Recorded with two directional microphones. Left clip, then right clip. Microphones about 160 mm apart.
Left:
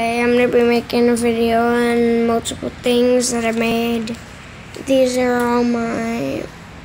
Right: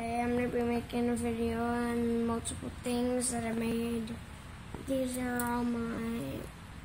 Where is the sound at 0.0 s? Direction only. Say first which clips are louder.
Left 17 dB; 35° left (ahead or behind).